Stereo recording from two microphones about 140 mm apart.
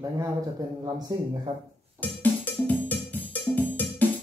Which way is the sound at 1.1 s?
30° right (ahead or behind).